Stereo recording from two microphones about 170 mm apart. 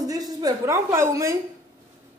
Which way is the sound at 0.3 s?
20° right (ahead or behind).